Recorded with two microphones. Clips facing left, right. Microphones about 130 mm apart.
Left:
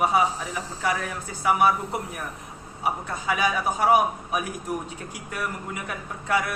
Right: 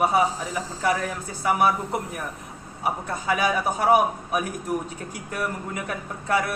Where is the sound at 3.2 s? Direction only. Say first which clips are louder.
Right 1 dB; 45° right (ahead or behind).